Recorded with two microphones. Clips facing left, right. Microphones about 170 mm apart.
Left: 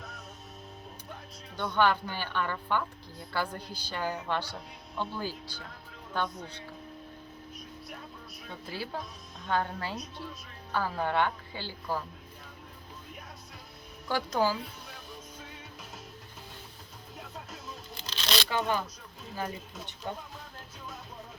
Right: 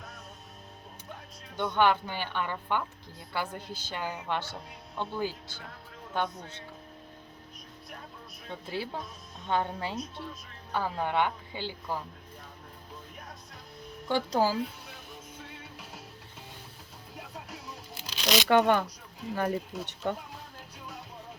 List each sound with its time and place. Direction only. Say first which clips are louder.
1.5 s speech: right 1 dB; 20° right (ahead or behind)
8.4 s speech: right 3 dB; 25° right (ahead or behind)
14.1 s speech: right 2 dB; 30° right (ahead or behind)
17.5 s tearing: even; 10° right (ahead or behind)
18.4 s speech: right 11 dB; 65° right (ahead or behind)